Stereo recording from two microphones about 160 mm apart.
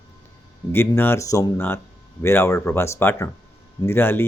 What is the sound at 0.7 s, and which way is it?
Speech, 15° left (ahead or behind).